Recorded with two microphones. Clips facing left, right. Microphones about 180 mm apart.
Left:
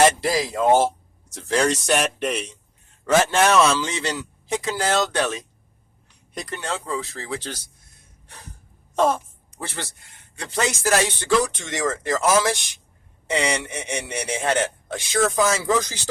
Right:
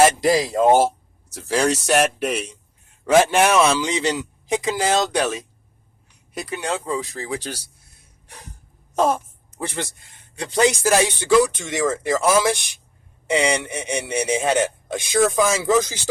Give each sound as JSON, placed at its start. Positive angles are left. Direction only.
{"t": 0.0, "sound": "speech", "side_deg": -15}
{"t": 9.0, "sound": "speech", "side_deg": -10}